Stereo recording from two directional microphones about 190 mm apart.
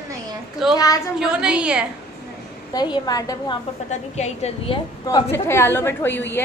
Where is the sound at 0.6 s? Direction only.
Centre (ahead or behind).